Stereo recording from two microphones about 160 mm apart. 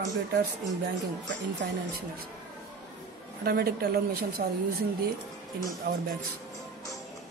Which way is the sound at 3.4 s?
80° right.